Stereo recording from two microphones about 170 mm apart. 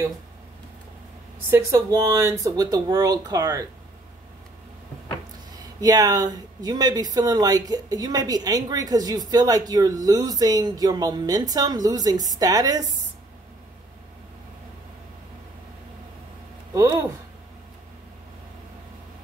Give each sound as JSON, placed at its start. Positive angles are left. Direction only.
{"t": 1.5, "sound": "speech", "side_deg": -20}
{"t": 5.8, "sound": "speech", "side_deg": -20}
{"t": 16.7, "sound": "speech", "side_deg": -15}